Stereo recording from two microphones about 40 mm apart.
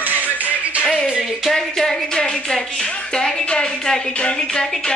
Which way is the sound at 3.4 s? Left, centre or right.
Left.